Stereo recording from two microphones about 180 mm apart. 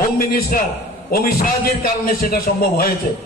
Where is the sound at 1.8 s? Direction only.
55° left (ahead or behind).